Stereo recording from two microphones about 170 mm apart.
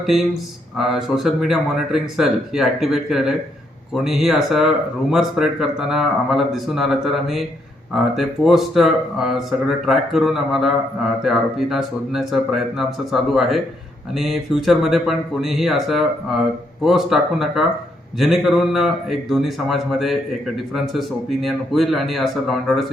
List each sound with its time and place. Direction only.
0.8 s speech: centre (ahead or behind)